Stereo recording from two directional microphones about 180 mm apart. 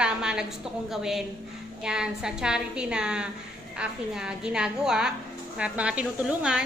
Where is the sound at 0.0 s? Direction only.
5° right (ahead or behind).